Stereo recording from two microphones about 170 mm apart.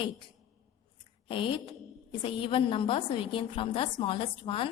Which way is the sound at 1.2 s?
30° left (ahead or behind).